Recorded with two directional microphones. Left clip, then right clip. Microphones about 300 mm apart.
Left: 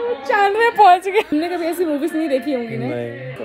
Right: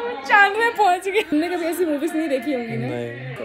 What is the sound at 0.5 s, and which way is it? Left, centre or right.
A woman's voice, left.